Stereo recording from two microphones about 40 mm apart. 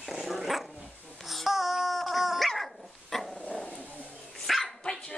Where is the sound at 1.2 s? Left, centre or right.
Centre.